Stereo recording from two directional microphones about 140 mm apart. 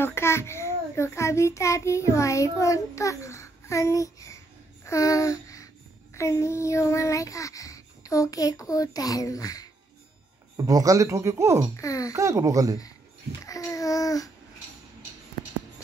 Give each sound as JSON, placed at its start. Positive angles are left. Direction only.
{"t": 0.0, "sound": "a child's voice", "side_deg": 20}
{"t": 4.8, "sound": "a sound", "side_deg": 20}
{"t": 6.1, "sound": "a child's voice", "side_deg": 20}
{"t": 10.6, "sound": "speech", "side_deg": -25}
{"t": 11.8, "sound": "a child's voice", "side_deg": 25}
{"t": 12.1, "sound": "speech", "side_deg": -20}
{"t": 13.5, "sound": "a child's voice", "side_deg": 25}